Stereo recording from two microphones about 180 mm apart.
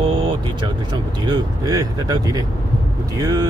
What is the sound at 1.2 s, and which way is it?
Speech, 25° right (ahead or behind).